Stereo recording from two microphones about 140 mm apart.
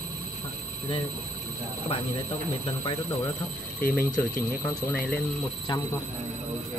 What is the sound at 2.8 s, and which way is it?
Speech, 30° left (ahead or behind).